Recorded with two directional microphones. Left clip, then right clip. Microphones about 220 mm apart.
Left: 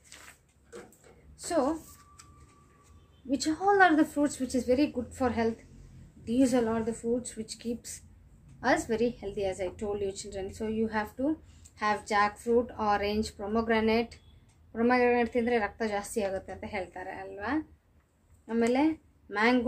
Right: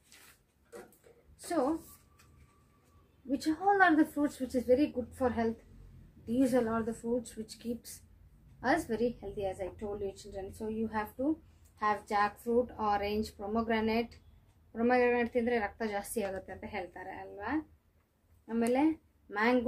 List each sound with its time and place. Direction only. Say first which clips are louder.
3.3 s a woman's voice: left 3 dB; 10° left (ahead or behind)
11.8 s a woman's voice: left 3 dB; 10° left (ahead or behind)